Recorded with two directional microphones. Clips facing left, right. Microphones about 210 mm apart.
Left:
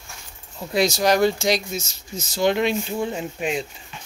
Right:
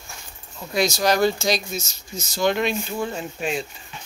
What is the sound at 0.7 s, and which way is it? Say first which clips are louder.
Speech: left 2 dB; 25° left (ahead or behind).